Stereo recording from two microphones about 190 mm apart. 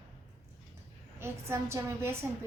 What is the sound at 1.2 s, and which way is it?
Speech, 15° right (ahead or behind).